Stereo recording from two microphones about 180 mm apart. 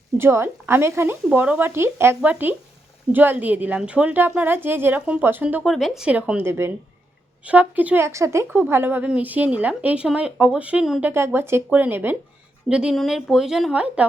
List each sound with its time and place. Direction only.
0.2 s a woman's voice: 15° right (ahead or behind)